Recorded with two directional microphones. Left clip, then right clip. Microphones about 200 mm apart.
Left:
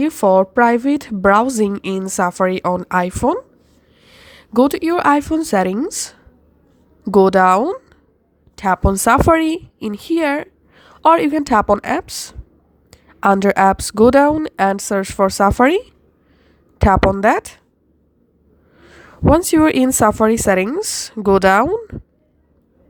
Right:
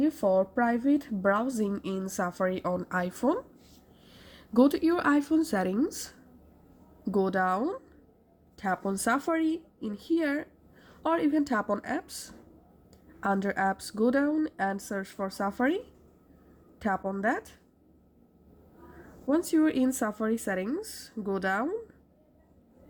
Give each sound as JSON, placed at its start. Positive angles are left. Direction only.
{"t": 0.0, "sound": "a woman's voice", "side_deg": 45}
{"t": 19.3, "sound": "a woman's voice", "side_deg": 40}